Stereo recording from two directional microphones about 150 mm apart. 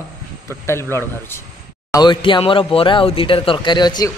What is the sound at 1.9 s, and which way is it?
Speech, 30° left (ahead or behind).